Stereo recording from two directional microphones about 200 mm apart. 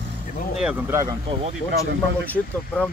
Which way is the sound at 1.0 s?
20° right (ahead or behind).